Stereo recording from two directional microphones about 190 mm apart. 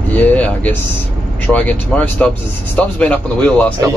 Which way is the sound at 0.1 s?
10° left (ahead or behind).